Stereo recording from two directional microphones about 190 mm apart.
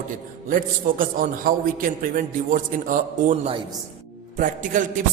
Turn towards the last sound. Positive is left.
turn(degrees=-45)  # may be behind; listen again after turning